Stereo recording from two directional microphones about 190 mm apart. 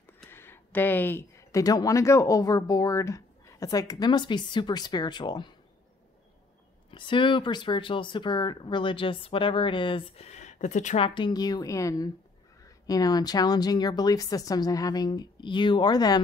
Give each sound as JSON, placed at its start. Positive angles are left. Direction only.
{"t": 0.2, "sound": "speech", "side_deg": 10}
{"t": 6.9, "sound": "speech", "side_deg": 25}